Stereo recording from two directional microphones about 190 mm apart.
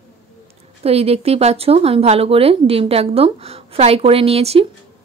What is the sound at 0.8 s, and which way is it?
Speech, 30° right (ahead or behind).